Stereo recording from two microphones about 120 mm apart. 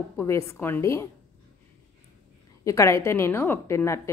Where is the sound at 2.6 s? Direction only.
25° left (ahead or behind).